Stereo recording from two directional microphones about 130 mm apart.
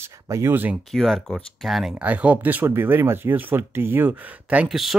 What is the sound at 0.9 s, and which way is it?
Speech, centre (ahead or behind).